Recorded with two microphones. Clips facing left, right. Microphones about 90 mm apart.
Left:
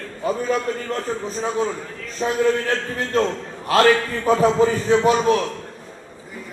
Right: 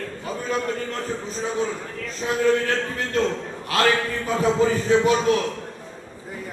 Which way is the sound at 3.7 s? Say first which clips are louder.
Left 5 dB; 35° left (ahead or behind).